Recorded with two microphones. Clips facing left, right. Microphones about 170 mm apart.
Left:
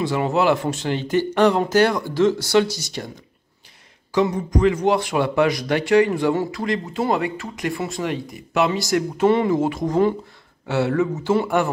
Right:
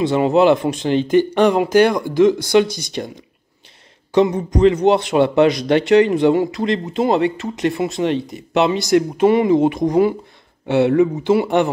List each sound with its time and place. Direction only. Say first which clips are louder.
0.0 s speech: right 6 dB; 20° right (ahead or behind)
4.1 s speech: right 4 dB; 25° right (ahead or behind)